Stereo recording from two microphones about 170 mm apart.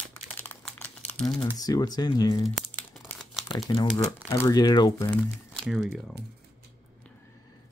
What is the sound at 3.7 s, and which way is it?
Speech, 25° left (ahead or behind).